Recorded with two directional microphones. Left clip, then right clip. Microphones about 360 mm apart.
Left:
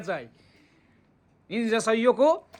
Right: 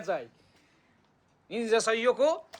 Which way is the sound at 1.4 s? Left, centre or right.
Centre.